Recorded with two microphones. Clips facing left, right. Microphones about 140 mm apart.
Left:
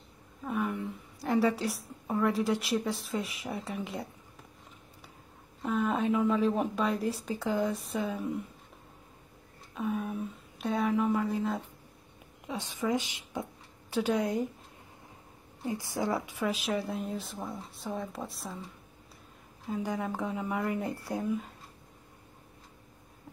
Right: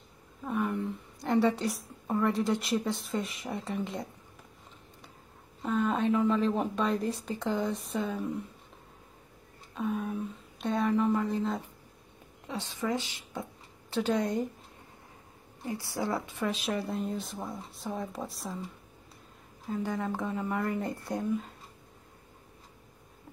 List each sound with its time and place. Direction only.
0.4 s a sound: centre (ahead or behind)
2.0 s speech: centre (ahead or behind)
5.6 s speech: 5° left (ahead or behind)
9.8 s speech: centre (ahead or behind)
12.4 s speech: 15° left (ahead or behind)
15.6 s speech: 15° left (ahead or behind)
16.3 s speech: centre (ahead or behind)
19.7 s speech: 10° left (ahead or behind)